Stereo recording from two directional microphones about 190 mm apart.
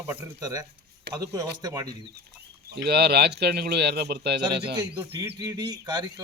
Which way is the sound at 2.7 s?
60° right (ahead or behind).